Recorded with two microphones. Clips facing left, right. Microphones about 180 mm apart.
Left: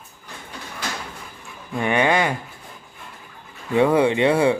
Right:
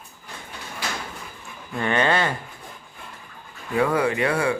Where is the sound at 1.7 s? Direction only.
15° left (ahead or behind).